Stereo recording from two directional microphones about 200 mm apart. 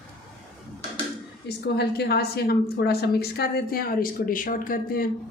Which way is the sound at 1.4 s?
55° left (ahead or behind).